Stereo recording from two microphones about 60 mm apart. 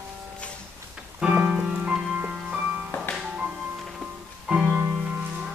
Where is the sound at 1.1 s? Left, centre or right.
Right.